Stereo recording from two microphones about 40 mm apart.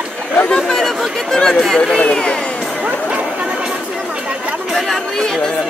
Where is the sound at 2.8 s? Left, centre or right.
Right.